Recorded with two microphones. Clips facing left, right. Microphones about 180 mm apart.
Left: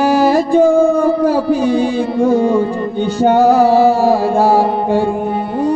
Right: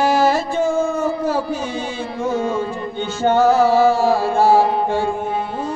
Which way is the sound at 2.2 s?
35° left (ahead or behind).